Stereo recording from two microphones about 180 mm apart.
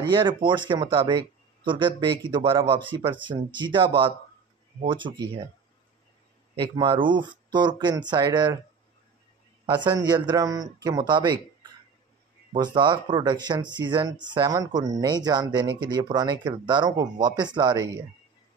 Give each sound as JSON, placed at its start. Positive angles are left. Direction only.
{"t": 0.0, "sound": "speech", "side_deg": -25}
{"t": 6.6, "sound": "speech", "side_deg": -25}
{"t": 9.7, "sound": "speech", "side_deg": -25}
{"t": 12.5, "sound": "speech", "side_deg": -25}